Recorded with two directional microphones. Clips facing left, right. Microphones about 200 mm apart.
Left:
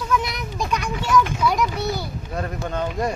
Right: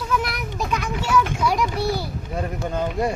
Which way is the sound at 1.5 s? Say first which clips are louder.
Right 1 dB; 30° right (ahead or behind).